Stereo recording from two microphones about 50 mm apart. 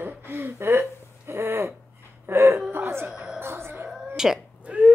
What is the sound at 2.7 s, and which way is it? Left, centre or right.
Hoot, right.